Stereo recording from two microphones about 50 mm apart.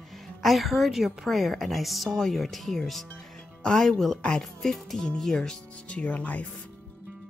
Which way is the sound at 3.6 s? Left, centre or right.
Centre.